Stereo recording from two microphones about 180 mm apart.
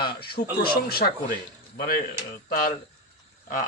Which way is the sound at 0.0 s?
60° left (ahead or behind).